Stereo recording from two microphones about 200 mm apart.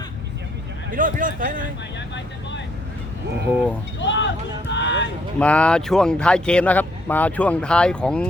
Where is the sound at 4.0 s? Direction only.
65° left (ahead or behind).